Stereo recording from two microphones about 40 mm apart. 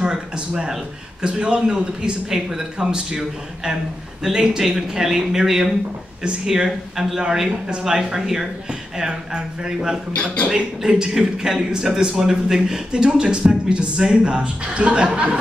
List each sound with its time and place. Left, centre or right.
0.1 s speech: centre
10.1 s speech: left
10.5 s speech: centre